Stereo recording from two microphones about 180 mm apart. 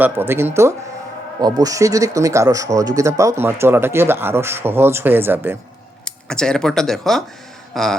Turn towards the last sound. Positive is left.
turn(degrees=0)  # may be behind; listen again after turning